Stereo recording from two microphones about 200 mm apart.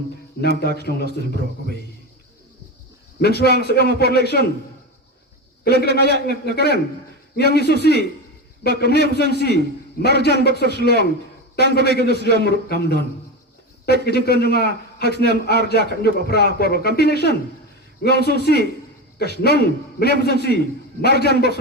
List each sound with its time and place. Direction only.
0.8 s a man's voice: 55° left (ahead or behind)
3.2 s a man's voice: 55° left (ahead or behind)
5.6 s a man's voice: 55° left (ahead or behind)